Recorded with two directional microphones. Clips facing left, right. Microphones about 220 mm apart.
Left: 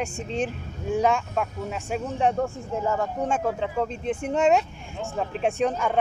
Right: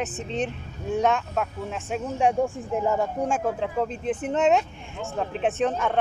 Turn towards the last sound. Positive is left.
turn(degrees=0)  # may be behind; listen again after turning